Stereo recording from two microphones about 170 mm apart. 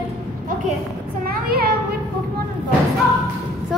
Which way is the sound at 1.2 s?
60° right (ahead or behind).